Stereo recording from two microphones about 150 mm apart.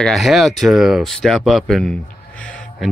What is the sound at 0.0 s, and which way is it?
Speech, centre (ahead or behind).